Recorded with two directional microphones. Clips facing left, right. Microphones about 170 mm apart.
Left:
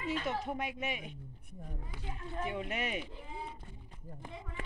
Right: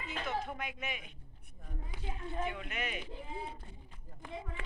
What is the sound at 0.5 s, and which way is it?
Speech, 35° left (ahead or behind).